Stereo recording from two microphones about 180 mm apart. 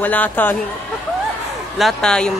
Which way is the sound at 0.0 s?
10° left (ahead or behind).